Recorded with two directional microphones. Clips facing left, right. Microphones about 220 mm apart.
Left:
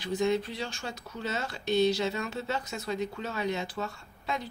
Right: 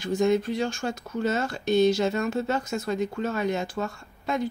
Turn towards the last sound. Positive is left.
turn(degrees=-50)  # may be behind; listen again after turning